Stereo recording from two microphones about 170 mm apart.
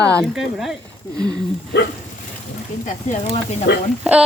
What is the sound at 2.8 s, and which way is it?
Speech, 40° left (ahead or behind).